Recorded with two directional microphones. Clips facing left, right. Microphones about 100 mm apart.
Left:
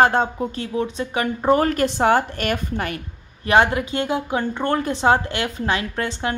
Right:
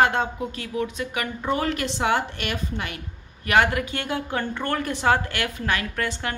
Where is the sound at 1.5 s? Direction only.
45° left (ahead or behind).